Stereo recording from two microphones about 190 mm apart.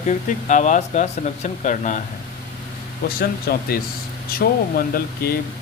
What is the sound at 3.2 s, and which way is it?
Speech, 50° left (ahead or behind).